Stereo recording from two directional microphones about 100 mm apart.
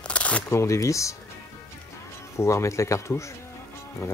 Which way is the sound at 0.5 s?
30° left (ahead or behind).